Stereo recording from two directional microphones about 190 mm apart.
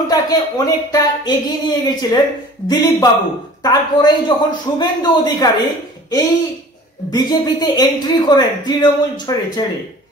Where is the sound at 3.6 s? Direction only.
20° left (ahead or behind).